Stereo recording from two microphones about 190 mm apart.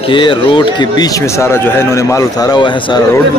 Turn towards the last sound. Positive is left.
turn(degrees=25)  # may be behind; listen again after turning